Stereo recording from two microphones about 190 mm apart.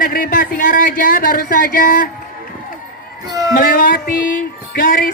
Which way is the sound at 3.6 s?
50° left (ahead or behind).